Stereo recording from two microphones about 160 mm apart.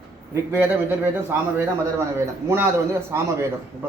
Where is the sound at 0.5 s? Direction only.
15° right (ahead or behind).